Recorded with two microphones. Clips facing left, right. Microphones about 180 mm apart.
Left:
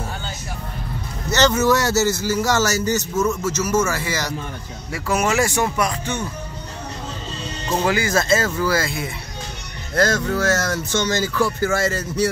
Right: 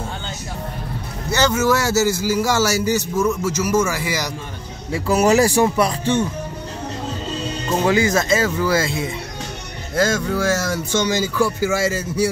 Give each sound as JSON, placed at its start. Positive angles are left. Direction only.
{"t": 1.3, "sound": "speech", "side_deg": -10}
{"t": 4.9, "sound": "speech", "side_deg": -35}
{"t": 7.9, "sound": "speech", "side_deg": -20}
{"t": 9.9, "sound": "speech", "side_deg": -10}